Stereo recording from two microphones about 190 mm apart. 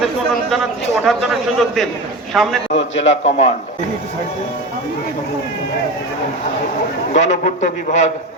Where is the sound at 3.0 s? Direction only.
35° left (ahead or behind).